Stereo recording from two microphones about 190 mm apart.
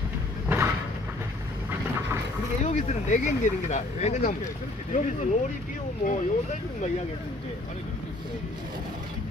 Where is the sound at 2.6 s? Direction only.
35° left (ahead or behind).